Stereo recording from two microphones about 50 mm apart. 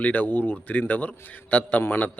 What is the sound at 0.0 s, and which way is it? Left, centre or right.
Speech, left.